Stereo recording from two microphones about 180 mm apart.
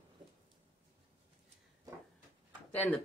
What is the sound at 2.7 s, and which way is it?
Speech, 10° left (ahead or behind).